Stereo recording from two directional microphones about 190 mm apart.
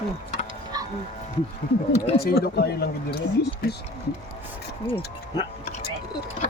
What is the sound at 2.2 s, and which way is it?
Speech, 55° left (ahead or behind).